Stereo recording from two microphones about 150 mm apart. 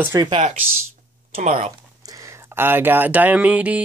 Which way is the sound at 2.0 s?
20° right (ahead or behind).